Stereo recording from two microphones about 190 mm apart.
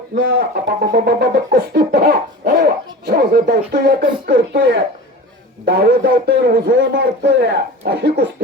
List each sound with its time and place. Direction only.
0.2 s speech: 60° right (ahead or behind)